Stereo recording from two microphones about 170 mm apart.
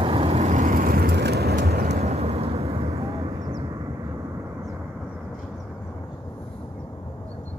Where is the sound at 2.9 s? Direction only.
20° right (ahead or behind).